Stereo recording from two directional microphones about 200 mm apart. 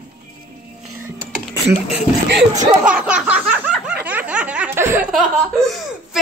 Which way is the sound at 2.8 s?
5° right (ahead or behind).